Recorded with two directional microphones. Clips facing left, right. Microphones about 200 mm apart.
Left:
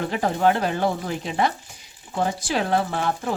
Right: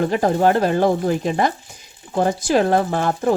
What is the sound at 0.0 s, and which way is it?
Speech, 40° right (ahead or behind).